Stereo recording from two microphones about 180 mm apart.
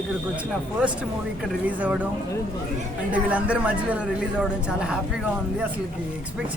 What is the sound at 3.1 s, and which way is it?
A man's voice, 10° right (ahead or behind).